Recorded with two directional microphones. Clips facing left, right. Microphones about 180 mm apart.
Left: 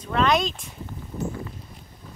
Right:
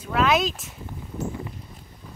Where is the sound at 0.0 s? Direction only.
5° right (ahead or behind).